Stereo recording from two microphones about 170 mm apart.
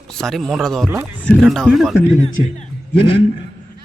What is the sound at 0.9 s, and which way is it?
Speech, 10° right (ahead or behind).